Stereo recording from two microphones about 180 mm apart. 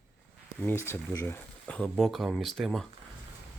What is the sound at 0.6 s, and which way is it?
Speech, 10° left (ahead or behind).